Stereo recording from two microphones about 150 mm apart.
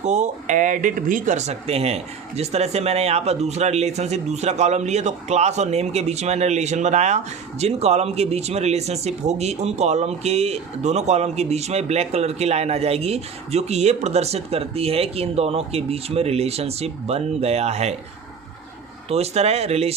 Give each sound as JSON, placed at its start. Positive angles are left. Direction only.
{"t": 0.0, "sound": "speech", "side_deg": -50}
{"t": 19.0, "sound": "speech", "side_deg": -45}